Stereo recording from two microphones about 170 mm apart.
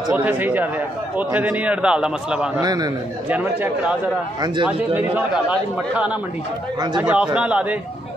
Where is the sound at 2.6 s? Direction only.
25° right (ahead or behind).